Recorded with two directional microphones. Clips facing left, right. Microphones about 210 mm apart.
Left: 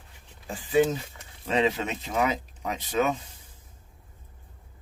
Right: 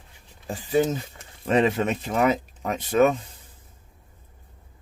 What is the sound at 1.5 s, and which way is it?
Speech, 55° right (ahead or behind).